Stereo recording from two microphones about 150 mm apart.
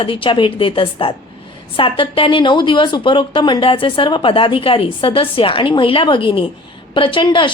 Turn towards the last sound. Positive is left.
turn(degrees=35)  # may be behind; listen again after turning